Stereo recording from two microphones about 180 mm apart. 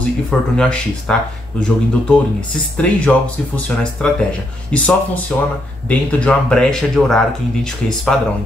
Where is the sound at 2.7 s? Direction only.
5° left (ahead or behind).